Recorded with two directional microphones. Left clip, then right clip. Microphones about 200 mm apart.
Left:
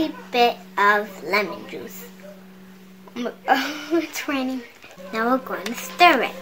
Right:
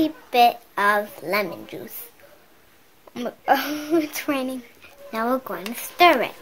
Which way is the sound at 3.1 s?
45° right (ahead or behind).